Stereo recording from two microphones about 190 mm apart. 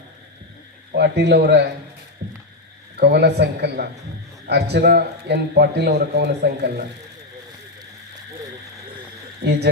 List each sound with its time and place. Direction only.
0.9 s a man's voice: 60° right (ahead or behind)
2.2 s a sound: 60° right (ahead or behind)
3.0 s a man's voice: 60° right (ahead or behind)
9.4 s a man's voice: 60° right (ahead or behind)